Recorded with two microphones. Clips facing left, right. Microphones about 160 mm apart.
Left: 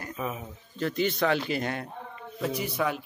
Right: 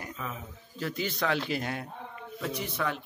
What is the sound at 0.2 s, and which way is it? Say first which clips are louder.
Speech: left 7 dB; 15° left (ahead or behind).